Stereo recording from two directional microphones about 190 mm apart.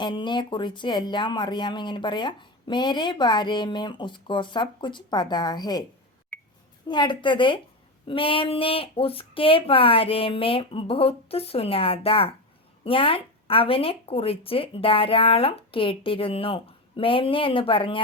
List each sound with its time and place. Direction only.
0.0 s speech: 25° left (ahead or behind)
6.3 s a sound: 5° left (ahead or behind)
6.8 s speech: 25° left (ahead or behind)